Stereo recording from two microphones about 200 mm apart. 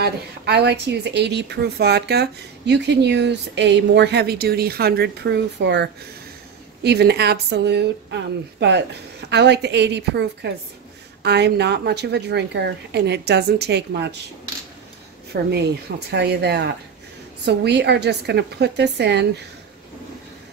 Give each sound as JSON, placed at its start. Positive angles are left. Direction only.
{"t": 0.0, "sound": "a woman's voice", "side_deg": -55}
{"t": 15.5, "sound": "a woman's voice", "side_deg": -55}